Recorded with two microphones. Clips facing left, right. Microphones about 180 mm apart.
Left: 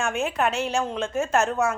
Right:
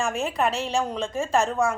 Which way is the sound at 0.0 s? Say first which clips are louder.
Even; centre (ahead or behind).